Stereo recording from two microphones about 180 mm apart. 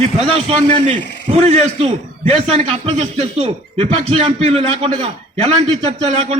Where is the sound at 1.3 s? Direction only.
35° right (ahead or behind).